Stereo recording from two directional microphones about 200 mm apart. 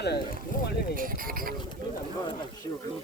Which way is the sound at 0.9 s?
45° right (ahead or behind).